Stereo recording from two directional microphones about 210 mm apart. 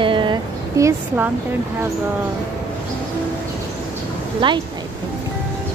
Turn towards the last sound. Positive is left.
turn(degrees=-25)  # may be behind; listen again after turning